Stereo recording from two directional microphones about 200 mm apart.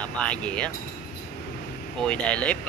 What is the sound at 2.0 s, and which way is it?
Speech, 5° left (ahead or behind).